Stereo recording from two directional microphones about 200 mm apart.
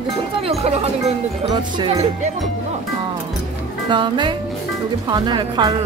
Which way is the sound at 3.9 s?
25° right (ahead or behind).